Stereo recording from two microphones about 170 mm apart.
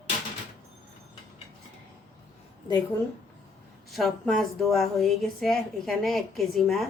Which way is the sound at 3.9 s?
Centre (ahead or behind).